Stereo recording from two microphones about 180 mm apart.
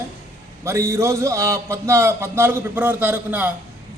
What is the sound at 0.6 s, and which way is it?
A man's voice, 15° right (ahead or behind).